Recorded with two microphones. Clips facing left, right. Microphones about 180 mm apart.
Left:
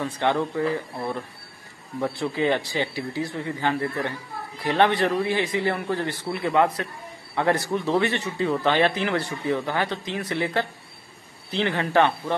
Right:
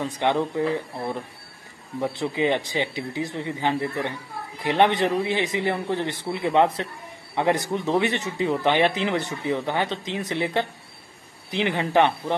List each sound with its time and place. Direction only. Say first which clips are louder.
0.0 s a man's voice: right 1 dB; 20° right (ahead or behind)